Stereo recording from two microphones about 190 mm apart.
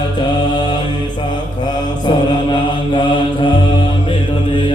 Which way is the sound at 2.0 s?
25° left (ahead or behind).